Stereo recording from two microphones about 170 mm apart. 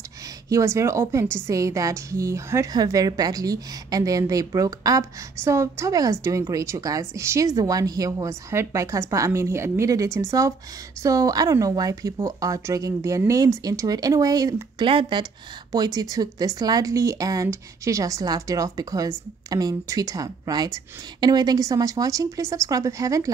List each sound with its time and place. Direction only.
0.5 s speech: 20° right (ahead or behind)